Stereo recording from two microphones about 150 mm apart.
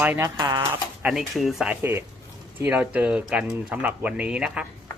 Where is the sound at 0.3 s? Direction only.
25° right (ahead or behind).